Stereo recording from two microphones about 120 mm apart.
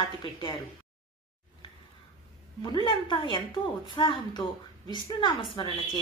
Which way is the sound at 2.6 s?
40° left (ahead or behind).